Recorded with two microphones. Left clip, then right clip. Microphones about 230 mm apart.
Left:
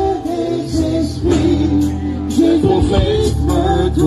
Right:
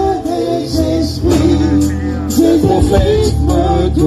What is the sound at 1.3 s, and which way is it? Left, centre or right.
Music, right.